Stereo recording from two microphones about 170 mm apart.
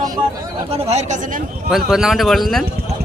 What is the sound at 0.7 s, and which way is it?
Speech, 35° right (ahead or behind).